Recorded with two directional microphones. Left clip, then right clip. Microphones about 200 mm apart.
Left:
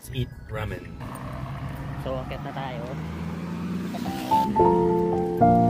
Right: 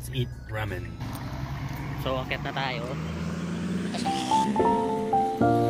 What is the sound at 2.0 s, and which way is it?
Speech, 5° left (ahead or behind).